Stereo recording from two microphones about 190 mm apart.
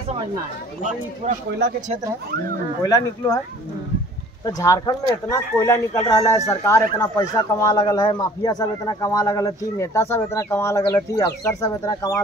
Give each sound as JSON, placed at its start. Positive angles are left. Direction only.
{"t": 2.8, "sound": "speech", "side_deg": 15}
{"t": 4.5, "sound": "speech", "side_deg": 15}